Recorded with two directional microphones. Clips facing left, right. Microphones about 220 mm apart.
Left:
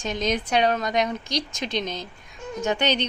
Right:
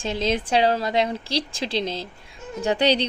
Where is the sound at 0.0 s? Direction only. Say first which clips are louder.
Right 2 dB; 30° right (ahead or behind).